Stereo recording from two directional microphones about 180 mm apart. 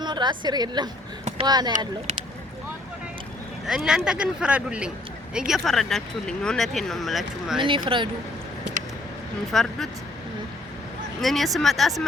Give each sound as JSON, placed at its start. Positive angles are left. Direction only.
{"t": 0.0, "sound": "a woman's voice", "side_deg": -25}
{"t": 3.7, "sound": "speech", "side_deg": -5}
{"t": 7.6, "sound": "speech", "side_deg": -30}
{"t": 9.5, "sound": "speech", "side_deg": 0}
{"t": 11.2, "sound": "speech", "side_deg": 0}